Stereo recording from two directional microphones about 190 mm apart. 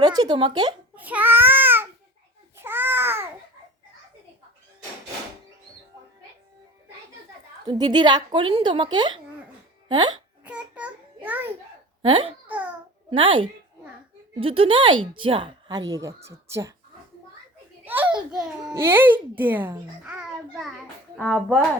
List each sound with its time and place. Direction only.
0.0 s speech: 20° right (ahead or behind)
0.9 s babbling: 10° right (ahead or behind)
7.7 s a woman's voice: 25° right (ahead or behind)
10.4 s a sound: 5° right (ahead or behind)
12.0 s a woman's voice: 25° right (ahead or behind)
15.9 s a child's voice: 15° right (ahead or behind)
17.8 s a child's voice: 10° right (ahead or behind)
21.2 s speech: 5° left (ahead or behind)